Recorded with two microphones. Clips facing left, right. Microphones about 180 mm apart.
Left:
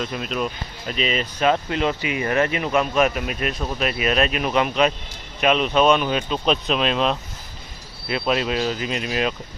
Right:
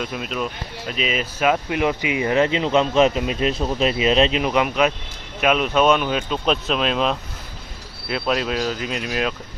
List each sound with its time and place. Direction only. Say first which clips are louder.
0.0 s speech: left 1 dB; 5° right (ahead or behind)